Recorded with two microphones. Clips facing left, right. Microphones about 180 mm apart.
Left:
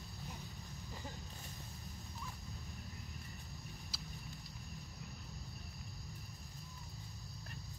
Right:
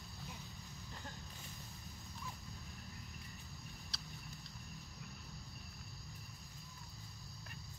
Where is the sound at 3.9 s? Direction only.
5° left (ahead or behind).